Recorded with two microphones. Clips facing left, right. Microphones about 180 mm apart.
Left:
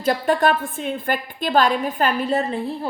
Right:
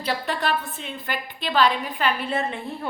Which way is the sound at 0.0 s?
45° left (ahead or behind).